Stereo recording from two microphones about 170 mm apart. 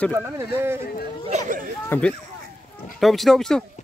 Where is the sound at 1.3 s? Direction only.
40° right (ahead or behind).